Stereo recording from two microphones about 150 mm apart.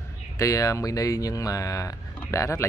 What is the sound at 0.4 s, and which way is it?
Speech, 20° left (ahead or behind).